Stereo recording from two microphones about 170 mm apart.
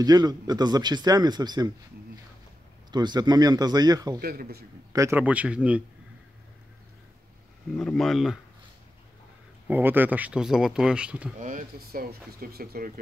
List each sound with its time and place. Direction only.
0.0 s speech: 25° right (ahead or behind)
2.9 s speech: 25° right (ahead or behind)
4.2 s speech: 65° right (ahead or behind)
4.9 s speech: 15° right (ahead or behind)
7.7 s speech: 5° left (ahead or behind)
9.7 s speech: 10° right (ahead or behind)
11.3 s speech: 45° right (ahead or behind)